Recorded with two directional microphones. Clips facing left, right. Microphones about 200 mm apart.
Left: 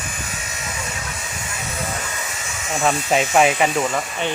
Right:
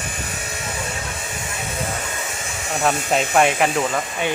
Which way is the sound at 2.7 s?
Centre (ahead or behind).